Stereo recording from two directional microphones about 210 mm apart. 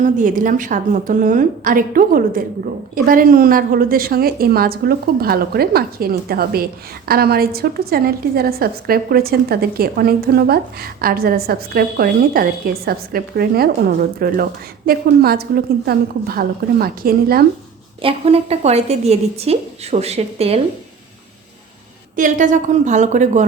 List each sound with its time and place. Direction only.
0.0 s a woman's voice: 40° right (ahead or behind)
18.0 s a woman's voice: 30° right (ahead or behind)
22.1 s a woman's voice: 35° right (ahead or behind)